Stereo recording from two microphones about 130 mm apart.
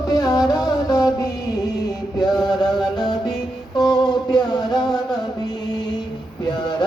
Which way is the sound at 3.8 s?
35° left (ahead or behind).